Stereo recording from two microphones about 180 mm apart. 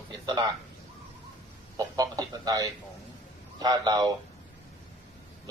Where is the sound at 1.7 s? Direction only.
20° right (ahead or behind).